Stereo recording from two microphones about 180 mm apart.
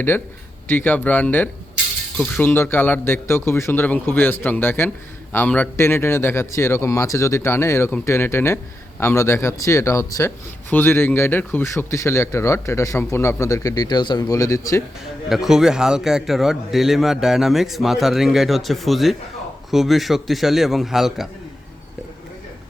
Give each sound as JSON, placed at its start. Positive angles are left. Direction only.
{"t": 0.7, "sound": "a man's voice", "side_deg": 10}
{"t": 15.3, "sound": "a man's voice", "side_deg": 0}